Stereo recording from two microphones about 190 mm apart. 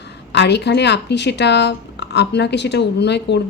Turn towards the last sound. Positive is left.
turn(degrees=65)  # may be behind; listen again after turning